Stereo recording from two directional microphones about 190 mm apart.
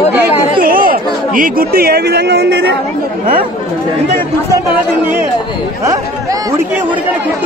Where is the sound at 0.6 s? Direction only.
50° right (ahead or behind).